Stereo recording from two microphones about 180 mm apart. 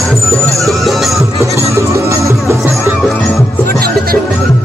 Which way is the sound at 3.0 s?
Centre (ahead or behind).